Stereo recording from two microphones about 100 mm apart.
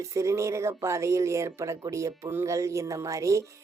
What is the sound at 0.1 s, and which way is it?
Speech, 30° right (ahead or behind).